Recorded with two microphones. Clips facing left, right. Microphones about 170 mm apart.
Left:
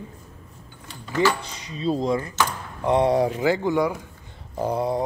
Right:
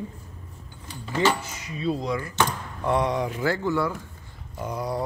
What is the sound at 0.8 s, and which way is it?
Drawer open or close, 15° right (ahead or behind).